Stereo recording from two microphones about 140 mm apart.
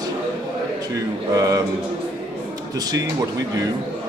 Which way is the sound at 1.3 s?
25° right (ahead or behind).